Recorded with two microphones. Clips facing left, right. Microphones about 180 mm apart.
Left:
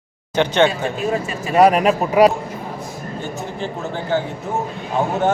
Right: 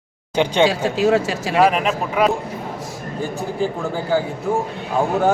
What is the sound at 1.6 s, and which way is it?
Speech, 40° left (ahead or behind).